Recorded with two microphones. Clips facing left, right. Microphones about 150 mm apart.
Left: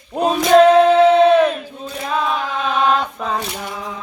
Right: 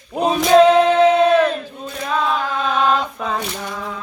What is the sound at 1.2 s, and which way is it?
Battle cry, 10° left (ahead or behind).